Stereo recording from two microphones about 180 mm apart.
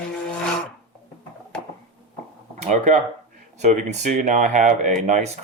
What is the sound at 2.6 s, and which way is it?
Speech, 40° right (ahead or behind).